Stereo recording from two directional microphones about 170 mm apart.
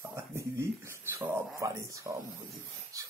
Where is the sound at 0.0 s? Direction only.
15° right (ahead or behind).